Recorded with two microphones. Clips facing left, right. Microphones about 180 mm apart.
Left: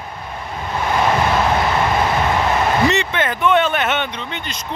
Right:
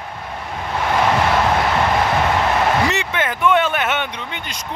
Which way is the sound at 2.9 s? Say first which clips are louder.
Left 3 dB; 10° right (ahead or behind).